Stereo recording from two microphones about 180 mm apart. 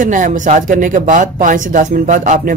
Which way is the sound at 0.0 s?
45° right (ahead or behind).